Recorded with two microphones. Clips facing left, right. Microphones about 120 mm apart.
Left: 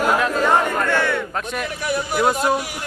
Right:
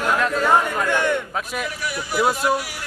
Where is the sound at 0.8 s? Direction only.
15° right (ahead or behind).